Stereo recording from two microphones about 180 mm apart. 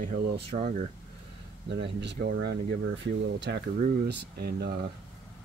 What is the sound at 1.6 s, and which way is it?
Speech, 75° right (ahead or behind).